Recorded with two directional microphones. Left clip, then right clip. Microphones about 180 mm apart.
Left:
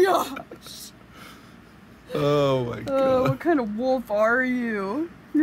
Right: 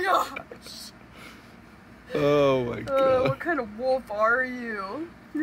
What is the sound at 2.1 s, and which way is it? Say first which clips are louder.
Speech: even; centre (ahead or behind).